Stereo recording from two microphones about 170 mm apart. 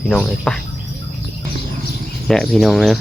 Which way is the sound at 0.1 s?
5° left (ahead or behind).